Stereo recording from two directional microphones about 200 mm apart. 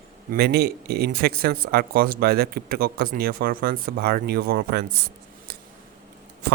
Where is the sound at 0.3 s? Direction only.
55° right (ahead or behind).